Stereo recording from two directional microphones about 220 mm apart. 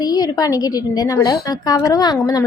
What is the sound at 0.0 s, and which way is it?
A woman's voice, 15° left (ahead or behind).